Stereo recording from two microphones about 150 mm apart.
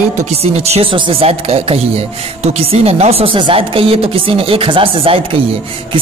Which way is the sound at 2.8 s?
45° right (ahead or behind).